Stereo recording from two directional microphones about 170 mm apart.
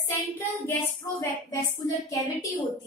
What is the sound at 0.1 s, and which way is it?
Speech, 10° left (ahead or behind).